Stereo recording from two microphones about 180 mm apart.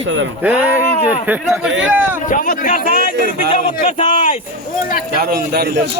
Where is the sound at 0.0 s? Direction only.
90° right.